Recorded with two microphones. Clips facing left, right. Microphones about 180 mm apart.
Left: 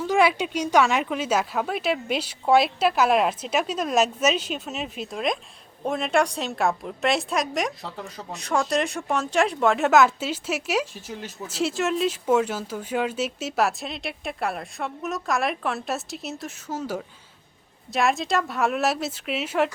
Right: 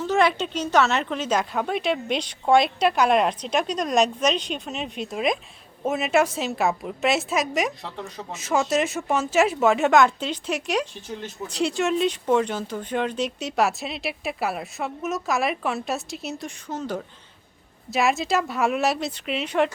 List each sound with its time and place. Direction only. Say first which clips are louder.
0.0 s a woman's voice: even; 10° left (ahead or behind)